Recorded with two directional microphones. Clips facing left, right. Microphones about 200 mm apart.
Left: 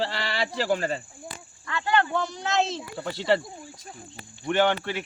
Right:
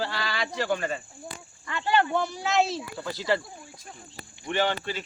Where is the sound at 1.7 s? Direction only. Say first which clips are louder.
Even; 15° right (ahead or behind).